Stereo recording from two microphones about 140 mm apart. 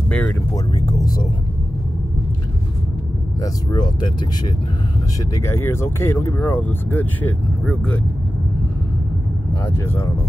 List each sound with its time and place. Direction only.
0.8 s speech: 25° left (ahead or behind)
3.7 s speech: 30° left (ahead or behind)
5.3 s speech: 20° left (ahead or behind)
9.7 s speech: 15° left (ahead or behind)